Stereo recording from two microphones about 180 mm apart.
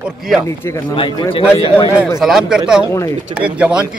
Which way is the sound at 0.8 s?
25° left (ahead or behind).